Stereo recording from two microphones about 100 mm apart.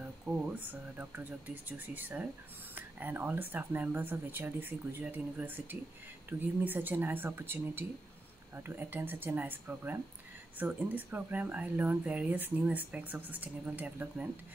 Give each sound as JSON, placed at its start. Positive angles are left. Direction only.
{"t": 0.5, "sound": "speech", "side_deg": -20}